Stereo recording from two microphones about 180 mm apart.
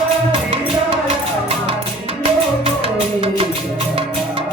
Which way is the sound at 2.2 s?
30° right (ahead or behind).